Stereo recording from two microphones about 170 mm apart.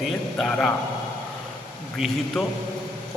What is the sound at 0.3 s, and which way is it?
Mantra, 5° left (ahead or behind).